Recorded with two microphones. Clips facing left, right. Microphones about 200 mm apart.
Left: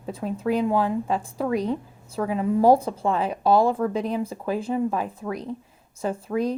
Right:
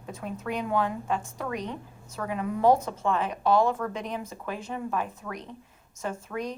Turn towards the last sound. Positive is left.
turn(degrees=35)  # may be behind; listen again after turning